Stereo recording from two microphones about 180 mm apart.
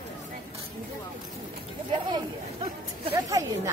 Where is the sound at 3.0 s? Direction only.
20° right (ahead or behind).